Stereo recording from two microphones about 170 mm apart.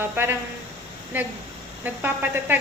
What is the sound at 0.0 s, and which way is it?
A woman's voice, 15° right (ahead or behind).